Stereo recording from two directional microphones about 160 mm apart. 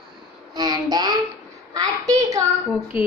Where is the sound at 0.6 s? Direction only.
25° right (ahead or behind).